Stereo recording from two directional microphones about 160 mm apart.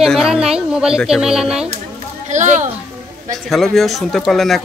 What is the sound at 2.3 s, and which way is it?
Speech, 50° right (ahead or behind).